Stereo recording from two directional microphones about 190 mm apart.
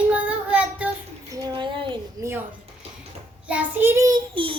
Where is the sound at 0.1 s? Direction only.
5° right (ahead or behind).